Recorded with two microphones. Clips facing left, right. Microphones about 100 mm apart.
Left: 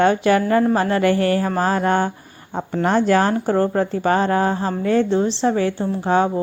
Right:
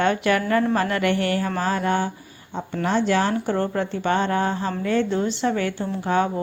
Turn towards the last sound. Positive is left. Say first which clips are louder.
# left 4 dB
turn(degrees=30)  # may be behind; listen again after turning